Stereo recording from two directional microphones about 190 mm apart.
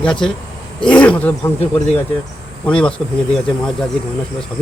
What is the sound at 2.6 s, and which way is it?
Speech, 5° left (ahead or behind).